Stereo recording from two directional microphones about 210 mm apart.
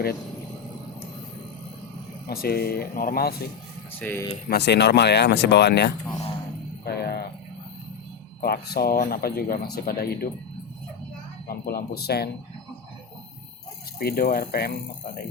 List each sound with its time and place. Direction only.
2.2 s speech: 45° left (ahead or behind)
3.9 s speech: 10° left (ahead or behind)
4.4 s speech: 50° left (ahead or behind)
8.4 s speech: 45° left (ahead or behind)
11.4 s speech: 45° left (ahead or behind)
14.0 s speech: 45° left (ahead or behind)